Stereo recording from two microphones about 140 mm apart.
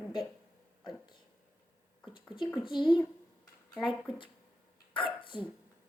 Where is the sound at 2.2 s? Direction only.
35° left (ahead or behind).